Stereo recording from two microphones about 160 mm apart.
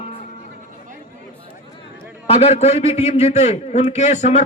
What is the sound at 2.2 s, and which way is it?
A man's voice, 40° left (ahead or behind).